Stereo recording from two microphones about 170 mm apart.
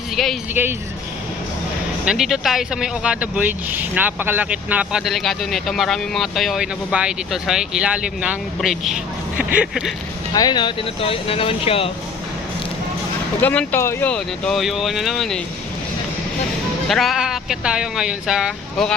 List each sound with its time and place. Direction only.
0.2 s speech: centre (ahead or behind)
0.5 s speech: 10° right (ahead or behind)
2.0 s speech: centre (ahead or behind)
10.3 s speech: 25° left (ahead or behind)
13.4 s speech: 10° left (ahead or behind)
16.9 s speech: centre (ahead or behind)